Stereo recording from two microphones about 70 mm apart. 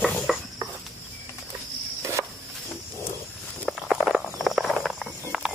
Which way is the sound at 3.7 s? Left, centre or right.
Centre.